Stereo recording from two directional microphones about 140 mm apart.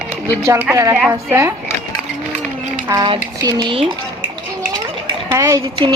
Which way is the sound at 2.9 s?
30° right (ahead or behind).